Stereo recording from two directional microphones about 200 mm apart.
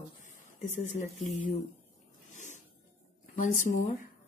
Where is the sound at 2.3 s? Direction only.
35° left (ahead or behind).